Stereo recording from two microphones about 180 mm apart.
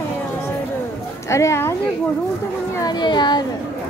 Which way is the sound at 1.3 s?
15° left (ahead or behind).